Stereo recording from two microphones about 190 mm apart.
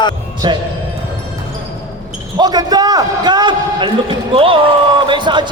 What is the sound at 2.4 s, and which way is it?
Speech, 20° right (ahead or behind).